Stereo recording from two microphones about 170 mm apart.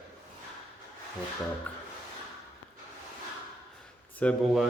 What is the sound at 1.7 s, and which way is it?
Music, 10° left (ahead or behind).